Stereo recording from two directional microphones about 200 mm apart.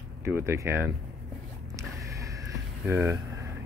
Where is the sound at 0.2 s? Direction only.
15° right (ahead or behind).